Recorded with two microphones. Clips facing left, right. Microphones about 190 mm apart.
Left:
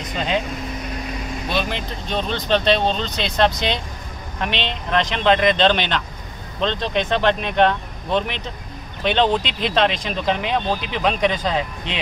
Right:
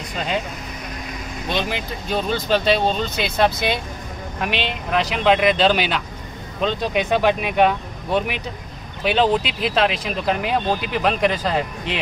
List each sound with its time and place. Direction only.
1.5 s speech: 15° right (ahead or behind)
1.8 s speech: 5° right (ahead or behind)